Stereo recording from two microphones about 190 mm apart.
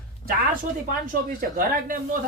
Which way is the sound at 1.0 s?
50° right (ahead or behind).